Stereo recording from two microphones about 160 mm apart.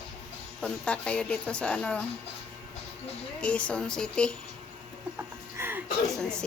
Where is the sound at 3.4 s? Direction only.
5° left (ahead or behind).